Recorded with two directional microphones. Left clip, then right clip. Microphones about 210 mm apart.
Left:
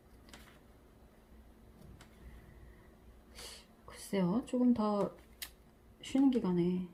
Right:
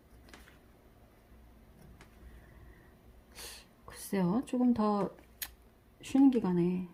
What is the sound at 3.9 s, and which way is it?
Speech, 30° right (ahead or behind).